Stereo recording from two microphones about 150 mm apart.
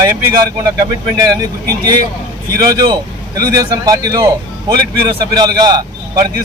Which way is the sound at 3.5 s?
25° right (ahead or behind).